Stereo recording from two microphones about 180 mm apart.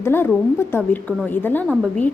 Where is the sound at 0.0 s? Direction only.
10° left (ahead or behind).